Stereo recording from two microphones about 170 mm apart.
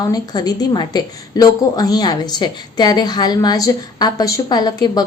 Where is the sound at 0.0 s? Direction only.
20° left (ahead or behind).